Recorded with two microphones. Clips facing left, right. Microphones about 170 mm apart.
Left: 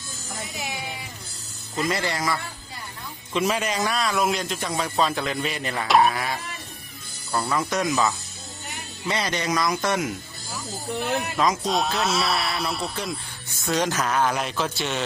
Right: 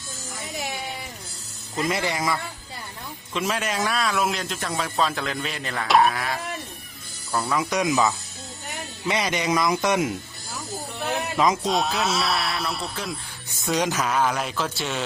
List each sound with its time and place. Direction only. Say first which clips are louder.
1.7 s speech: even; 20° right (ahead or behind)
3.3 s speech: left 2 dB; centre (ahead or behind); by 10.1 s 20° right (ahead or behind)
11.6 s speech: even; centre (ahead or behind)